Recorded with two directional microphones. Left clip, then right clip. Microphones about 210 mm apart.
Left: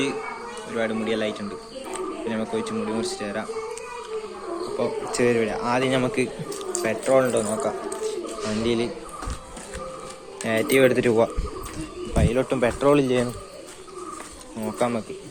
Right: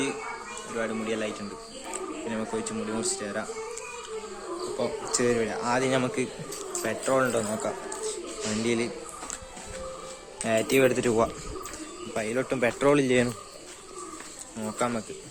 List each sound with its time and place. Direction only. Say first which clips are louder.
0.8 s a man's voice: left 5 dB; 10° right (ahead or behind)
2.3 s a man's voice: left 4 dB; 15° right (ahead or behind)
4.8 s a man's voice: left 4 dB; 15° right (ahead or behind)
10.4 s a man's voice: left 4 dB; 15° right (ahead or behind)
14.6 s speech: left 4 dB; 20° right (ahead or behind)